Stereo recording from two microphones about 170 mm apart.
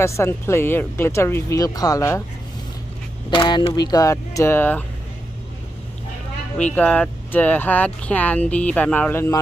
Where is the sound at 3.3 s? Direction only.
25° left (ahead or behind); by 4.8 s 10° left (ahead or behind).